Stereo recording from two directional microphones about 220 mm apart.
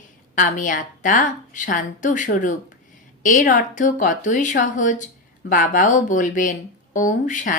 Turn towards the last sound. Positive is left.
turn(degrees=35)  # may be behind; listen again after turning